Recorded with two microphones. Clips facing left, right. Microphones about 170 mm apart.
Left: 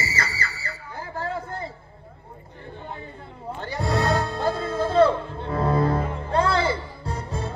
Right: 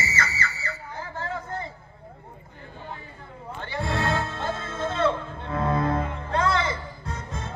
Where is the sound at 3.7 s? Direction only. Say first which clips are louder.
Left 3 dB; 40° left (ahead or behind).